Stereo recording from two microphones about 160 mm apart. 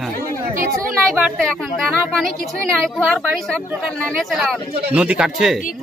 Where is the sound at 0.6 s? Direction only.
60° right (ahead or behind).